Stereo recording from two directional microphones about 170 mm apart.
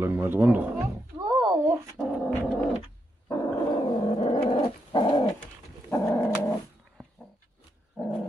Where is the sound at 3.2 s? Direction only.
20° left (ahead or behind).